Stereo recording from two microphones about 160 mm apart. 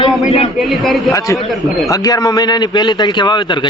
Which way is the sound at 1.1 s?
20° left (ahead or behind).